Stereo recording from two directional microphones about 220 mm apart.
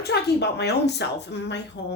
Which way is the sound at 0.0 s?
50° left (ahead or behind).